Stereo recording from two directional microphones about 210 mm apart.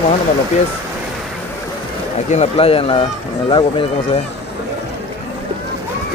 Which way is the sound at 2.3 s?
30° left (ahead or behind).